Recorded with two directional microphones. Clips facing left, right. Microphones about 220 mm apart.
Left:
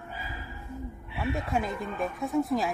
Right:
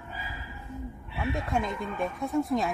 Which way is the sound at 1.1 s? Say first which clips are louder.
Even; 5° left (ahead or behind).